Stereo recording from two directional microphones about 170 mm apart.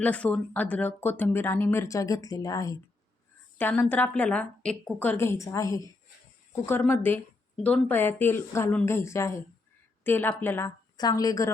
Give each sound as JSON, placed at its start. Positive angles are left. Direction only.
{"t": 0.0, "sound": "speech", "side_deg": 10}
{"t": 6.7, "sound": "a woman's voice", "side_deg": 10}